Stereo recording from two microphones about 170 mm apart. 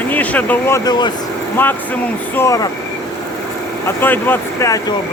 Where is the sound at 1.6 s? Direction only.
10° left (ahead or behind).